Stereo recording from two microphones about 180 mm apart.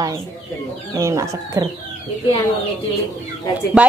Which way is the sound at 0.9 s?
15° right (ahead or behind).